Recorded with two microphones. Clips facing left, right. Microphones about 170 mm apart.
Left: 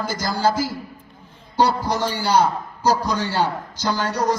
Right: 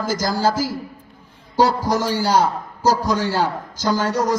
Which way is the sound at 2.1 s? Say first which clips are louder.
Right 1 dB; 45° right (ahead or behind).